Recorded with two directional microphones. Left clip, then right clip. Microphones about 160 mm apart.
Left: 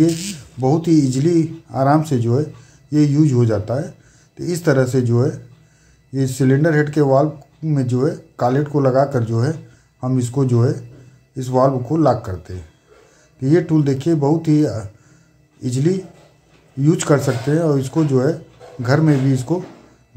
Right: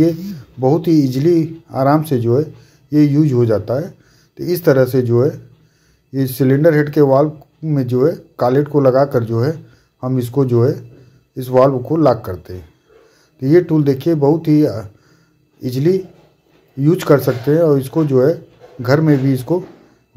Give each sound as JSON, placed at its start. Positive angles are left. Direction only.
{"t": 0.6, "sound": "speech", "side_deg": -15}